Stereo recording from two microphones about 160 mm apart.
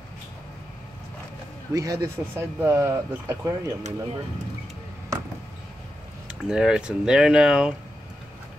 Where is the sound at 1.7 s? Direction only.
20° right (ahead or behind).